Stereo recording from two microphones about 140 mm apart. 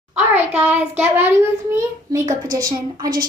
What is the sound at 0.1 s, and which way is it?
A child's voice, 10° right (ahead or behind).